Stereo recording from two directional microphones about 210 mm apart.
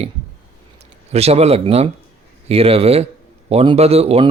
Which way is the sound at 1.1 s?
30° right (ahead or behind).